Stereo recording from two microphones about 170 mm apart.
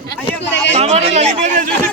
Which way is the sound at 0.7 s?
40° right (ahead or behind).